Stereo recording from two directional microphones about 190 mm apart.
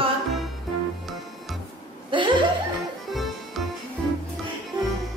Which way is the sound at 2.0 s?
25° right (ahead or behind).